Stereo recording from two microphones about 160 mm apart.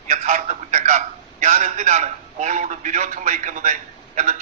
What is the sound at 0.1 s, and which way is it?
A man's voice, 45° right (ahead or behind).